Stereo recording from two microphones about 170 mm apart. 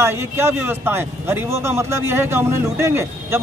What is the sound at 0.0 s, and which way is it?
A man's voice, 15° right (ahead or behind).